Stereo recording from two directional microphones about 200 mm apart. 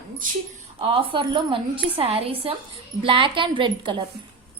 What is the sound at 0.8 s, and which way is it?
A woman's voice, 25° right (ahead or behind).